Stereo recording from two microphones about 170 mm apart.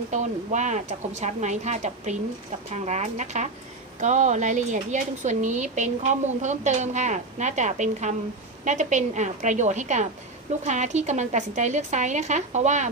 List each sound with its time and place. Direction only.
0.1 s a woman's voice: 45° right (ahead or behind)